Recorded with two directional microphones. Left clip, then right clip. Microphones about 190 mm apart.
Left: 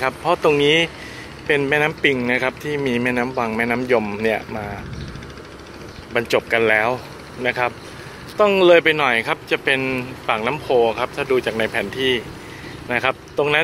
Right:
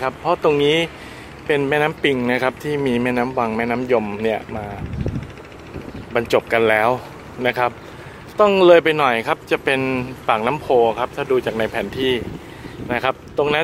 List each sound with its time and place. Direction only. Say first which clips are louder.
0.0 s speech: even; 5° right (ahead or behind)
6.1 s speech: right 1 dB; 15° right (ahead or behind)